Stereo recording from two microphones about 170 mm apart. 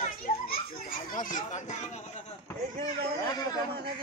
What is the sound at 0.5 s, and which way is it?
Children playing, 55° left (ahead or behind).